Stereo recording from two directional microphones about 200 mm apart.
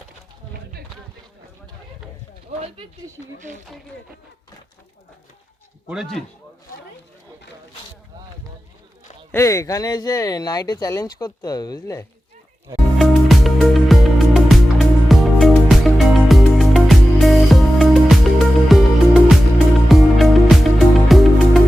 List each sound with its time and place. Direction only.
2.5 s speech: 30° right (ahead or behind)
5.9 s speech: centre (ahead or behind)
9.3 s speech: 15° left (ahead or behind)
13.0 s music: centre (ahead or behind)